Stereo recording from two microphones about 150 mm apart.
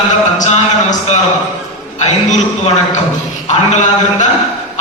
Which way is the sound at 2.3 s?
50° left (ahead or behind).